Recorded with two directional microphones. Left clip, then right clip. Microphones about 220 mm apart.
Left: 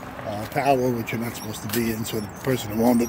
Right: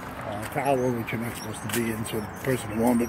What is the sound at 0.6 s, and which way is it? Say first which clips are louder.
Speech: left 4 dB; 15° left (ahead or behind).